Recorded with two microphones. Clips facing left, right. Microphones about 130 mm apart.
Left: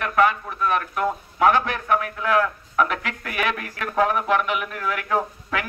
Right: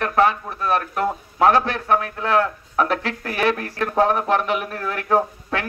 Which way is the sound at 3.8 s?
30° right (ahead or behind).